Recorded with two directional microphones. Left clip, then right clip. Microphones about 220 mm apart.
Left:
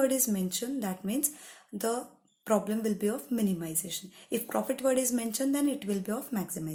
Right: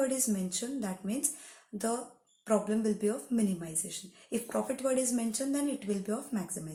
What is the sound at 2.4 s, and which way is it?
Speech, 40° left (ahead or behind).